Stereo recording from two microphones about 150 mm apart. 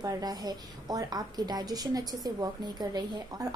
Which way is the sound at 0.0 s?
25° right (ahead or behind).